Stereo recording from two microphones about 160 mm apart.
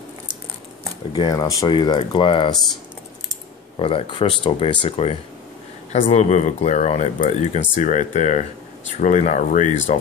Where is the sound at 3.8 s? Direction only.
35° left (ahead or behind).